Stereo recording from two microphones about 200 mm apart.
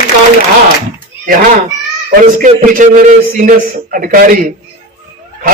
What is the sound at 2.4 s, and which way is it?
A man's voice, 40° right (ahead or behind).